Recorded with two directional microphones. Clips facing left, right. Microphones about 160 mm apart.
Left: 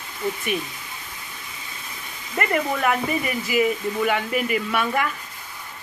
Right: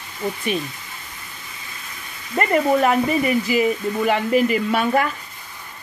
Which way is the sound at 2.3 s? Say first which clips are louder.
Right 6 dB; 30° right (ahead or behind).